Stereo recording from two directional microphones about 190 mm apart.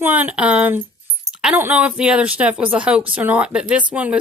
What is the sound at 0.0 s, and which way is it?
A woman's voice, 10° right (ahead or behind).